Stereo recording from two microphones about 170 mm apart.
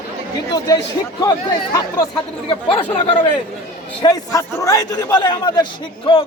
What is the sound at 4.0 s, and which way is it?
A man's voice, 20° left (ahead or behind).